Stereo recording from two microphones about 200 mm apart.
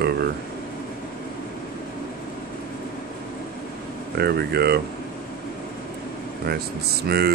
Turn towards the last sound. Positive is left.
turn(degrees=-55)  # may be behind; listen again after turning